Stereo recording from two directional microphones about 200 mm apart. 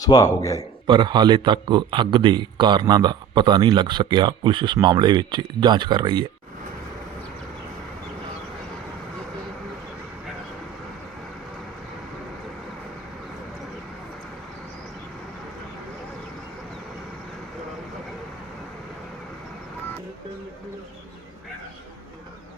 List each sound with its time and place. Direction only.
0.0 s a man's voice: 20° left (ahead or behind)
0.9 s speech: 20° right (ahead or behind)